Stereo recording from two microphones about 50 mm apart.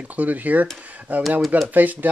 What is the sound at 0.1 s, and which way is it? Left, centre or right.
Speech, right.